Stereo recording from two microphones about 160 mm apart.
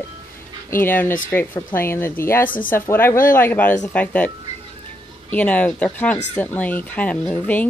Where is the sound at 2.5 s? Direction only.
60° left (ahead or behind).